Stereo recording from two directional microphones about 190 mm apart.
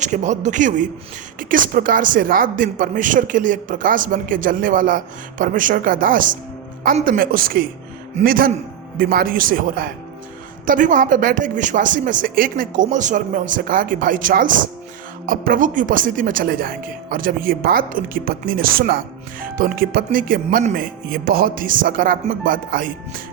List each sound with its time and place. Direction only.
0.0 s a man's voice: 40° right (ahead or behind)